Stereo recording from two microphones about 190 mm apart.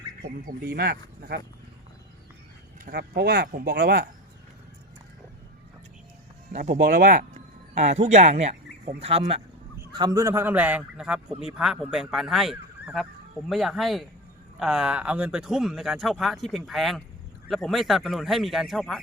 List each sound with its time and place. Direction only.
0.6 s speech: 55° right (ahead or behind)
2.8 s speech: 55° right (ahead or behind)
6.5 s speech: 40° right (ahead or behind)
9.9 s a man's voice: 20° right (ahead or behind); by 19.0 s centre (ahead or behind)